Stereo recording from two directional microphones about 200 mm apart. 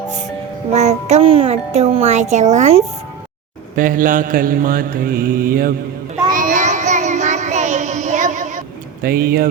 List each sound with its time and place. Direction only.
0.7 s a child's voice: 35° right (ahead or behind)
3.8 s mantra: 45° right (ahead or behind)
6.3 s child singing: 40° right (ahead or behind)